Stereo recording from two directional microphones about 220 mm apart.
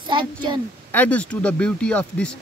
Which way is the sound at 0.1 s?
20° right (ahead or behind).